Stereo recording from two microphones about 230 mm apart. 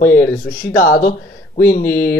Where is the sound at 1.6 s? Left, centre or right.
Centre.